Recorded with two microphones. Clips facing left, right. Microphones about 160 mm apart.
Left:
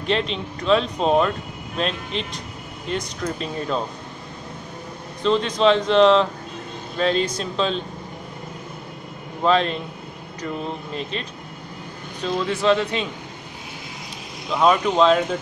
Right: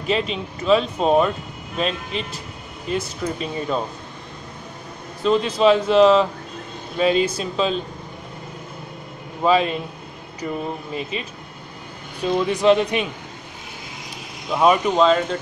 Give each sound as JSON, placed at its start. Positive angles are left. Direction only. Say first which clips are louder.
{"t": 0.0, "sound": "speech", "louder": "right 1 dB", "side_deg": -5}
{"t": 5.2, "sound": "speech", "louder": "right 1 dB", "side_deg": -5}
{"t": 9.4, "sound": "speech", "louder": "right 1 dB", "side_deg": -5}
{"t": 14.5, "sound": "speech", "louder": "right 1 dB", "side_deg": -10}